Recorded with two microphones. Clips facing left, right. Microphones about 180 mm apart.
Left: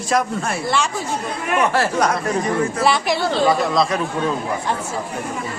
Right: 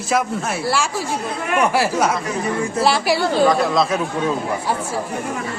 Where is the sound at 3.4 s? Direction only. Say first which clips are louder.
Even; 5° left (ahead or behind).